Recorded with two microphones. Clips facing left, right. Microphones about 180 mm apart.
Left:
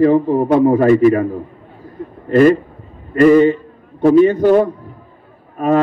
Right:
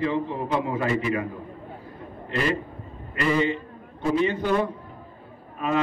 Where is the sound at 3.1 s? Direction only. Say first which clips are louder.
Left 14 dB; 50° left (ahead or behind).